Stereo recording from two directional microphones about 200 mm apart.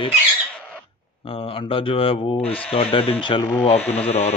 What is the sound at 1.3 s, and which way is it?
Speech, 25° left (ahead or behind).